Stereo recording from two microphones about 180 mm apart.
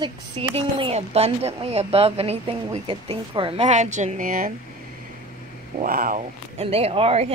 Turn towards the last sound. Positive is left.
turn(degrees=-35)  # may be behind; listen again after turning